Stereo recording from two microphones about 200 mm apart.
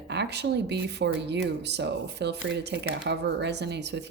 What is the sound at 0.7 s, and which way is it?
Speech, 60° right (ahead or behind).